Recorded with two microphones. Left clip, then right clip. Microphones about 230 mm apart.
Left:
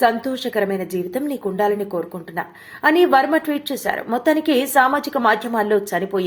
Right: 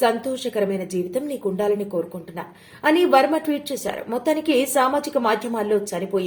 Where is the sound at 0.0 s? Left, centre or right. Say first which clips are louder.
Left 3 dB; centre.